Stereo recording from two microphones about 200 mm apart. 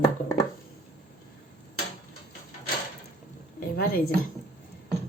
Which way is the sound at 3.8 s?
45° left (ahead or behind).